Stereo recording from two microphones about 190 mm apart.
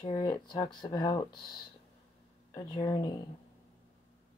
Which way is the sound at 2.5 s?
20° left (ahead or behind).